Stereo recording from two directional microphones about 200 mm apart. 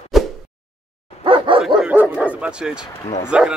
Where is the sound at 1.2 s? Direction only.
25° right (ahead or behind).